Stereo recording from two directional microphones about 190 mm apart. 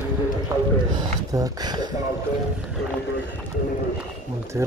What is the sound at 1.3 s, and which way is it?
Speech, 20° right (ahead or behind).